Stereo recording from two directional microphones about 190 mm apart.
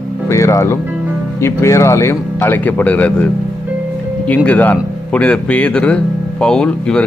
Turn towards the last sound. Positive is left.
turn(degrees=5)  # may be behind; listen again after turning